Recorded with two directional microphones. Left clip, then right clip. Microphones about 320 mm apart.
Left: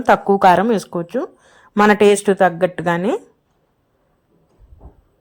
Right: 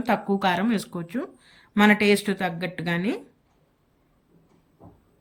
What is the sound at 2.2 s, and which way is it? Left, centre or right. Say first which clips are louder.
Speech: left 14 dB; left.